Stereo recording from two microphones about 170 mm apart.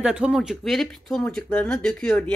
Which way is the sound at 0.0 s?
5° right (ahead or behind).